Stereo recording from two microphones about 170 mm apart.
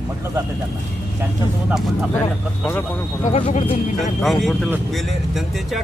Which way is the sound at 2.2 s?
15° left (ahead or behind).